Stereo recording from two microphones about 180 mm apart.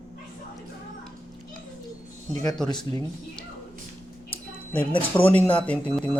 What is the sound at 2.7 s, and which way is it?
Speech, 25° left (ahead or behind).